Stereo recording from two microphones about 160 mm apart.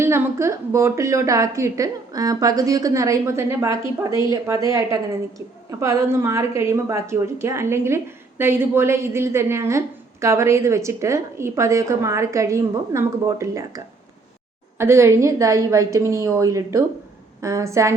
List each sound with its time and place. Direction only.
0.0 s a woman's voice: 15° right (ahead or behind)